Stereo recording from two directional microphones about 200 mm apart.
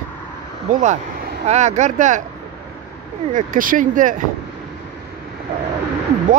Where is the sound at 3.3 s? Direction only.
40° right (ahead or behind).